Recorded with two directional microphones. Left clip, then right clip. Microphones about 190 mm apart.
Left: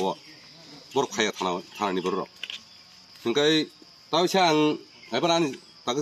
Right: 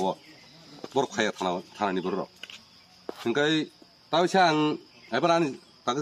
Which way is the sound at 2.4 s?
45° right (ahead or behind).